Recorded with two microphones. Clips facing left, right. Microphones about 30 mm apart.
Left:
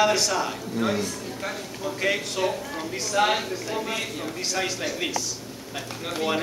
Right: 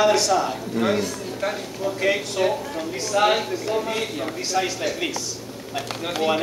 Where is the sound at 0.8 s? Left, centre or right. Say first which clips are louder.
Right 4 dB; right.